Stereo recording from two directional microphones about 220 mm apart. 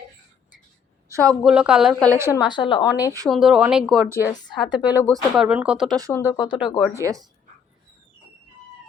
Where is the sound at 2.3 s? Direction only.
20° left (ahead or behind).